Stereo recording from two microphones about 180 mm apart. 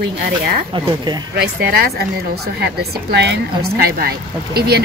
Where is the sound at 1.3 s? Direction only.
60° right (ahead or behind).